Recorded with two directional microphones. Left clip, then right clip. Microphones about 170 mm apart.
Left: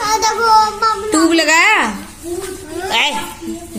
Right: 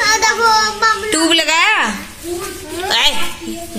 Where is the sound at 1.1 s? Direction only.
Centre (ahead or behind).